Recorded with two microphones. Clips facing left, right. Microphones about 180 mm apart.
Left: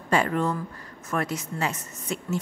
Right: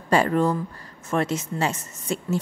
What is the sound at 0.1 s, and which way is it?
A woman's voice, 35° right (ahead or behind).